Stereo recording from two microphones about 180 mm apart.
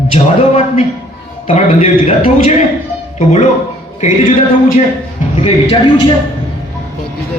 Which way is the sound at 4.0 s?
45° left (ahead or behind).